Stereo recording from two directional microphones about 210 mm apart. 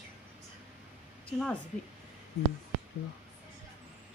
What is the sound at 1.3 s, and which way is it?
Speech, 5° left (ahead or behind).